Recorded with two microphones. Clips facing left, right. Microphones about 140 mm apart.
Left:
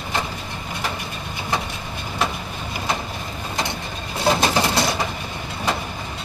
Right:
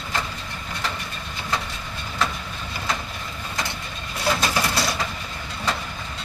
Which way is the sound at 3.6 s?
25° left (ahead or behind).